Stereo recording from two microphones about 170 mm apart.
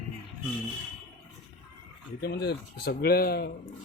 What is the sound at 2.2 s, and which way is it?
Speech, 70° left (ahead or behind).